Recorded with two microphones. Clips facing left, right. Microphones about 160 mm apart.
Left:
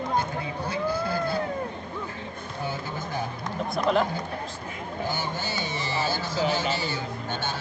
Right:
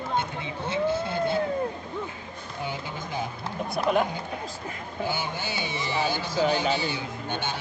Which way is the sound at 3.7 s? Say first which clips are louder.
Even; 10° right (ahead or behind).